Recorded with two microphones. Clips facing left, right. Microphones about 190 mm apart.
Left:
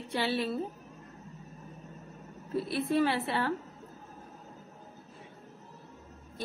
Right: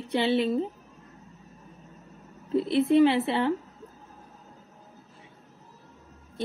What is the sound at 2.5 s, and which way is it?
A woman's voice, 20° right (ahead or behind).